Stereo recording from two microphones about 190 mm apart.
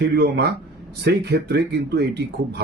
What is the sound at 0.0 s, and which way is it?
Speech, 60° right (ahead or behind).